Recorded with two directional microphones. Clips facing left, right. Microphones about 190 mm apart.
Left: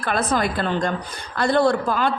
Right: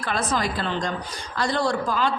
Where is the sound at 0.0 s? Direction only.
55° left (ahead or behind).